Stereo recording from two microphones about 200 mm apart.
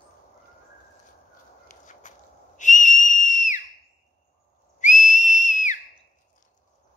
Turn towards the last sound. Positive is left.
turn(degrees=40)  # may be behind; listen again after turning